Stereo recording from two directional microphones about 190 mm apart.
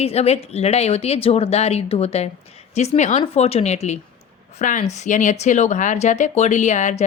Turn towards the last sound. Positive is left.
turn(degrees=40)  # may be behind; listen again after turning